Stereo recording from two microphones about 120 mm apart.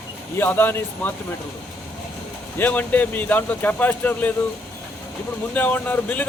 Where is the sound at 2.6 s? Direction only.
15° left (ahead or behind).